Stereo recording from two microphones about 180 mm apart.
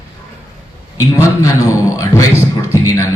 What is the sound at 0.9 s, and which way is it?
Speech, 20° left (ahead or behind).